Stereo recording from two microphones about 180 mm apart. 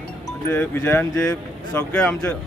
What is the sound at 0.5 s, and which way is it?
Speech, 10° left (ahead or behind).